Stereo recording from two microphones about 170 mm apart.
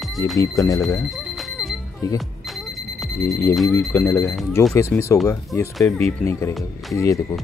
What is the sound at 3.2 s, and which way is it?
Speech, 20° left (ahead or behind).